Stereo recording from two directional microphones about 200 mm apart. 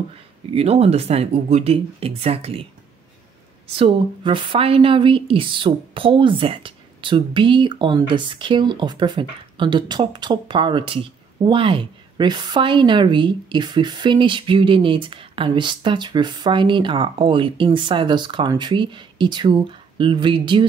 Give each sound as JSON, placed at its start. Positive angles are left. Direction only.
{"t": 0.5, "sound": "speech", "side_deg": -30}
{"t": 3.7, "sound": "a woman's voice", "side_deg": -25}